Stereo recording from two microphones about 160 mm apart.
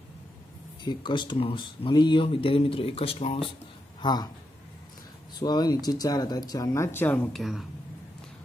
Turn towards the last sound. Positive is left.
turn(degrees=0)  # may be behind; listen again after turning